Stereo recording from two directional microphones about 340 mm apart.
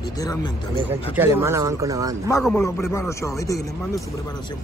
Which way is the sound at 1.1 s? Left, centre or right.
Centre.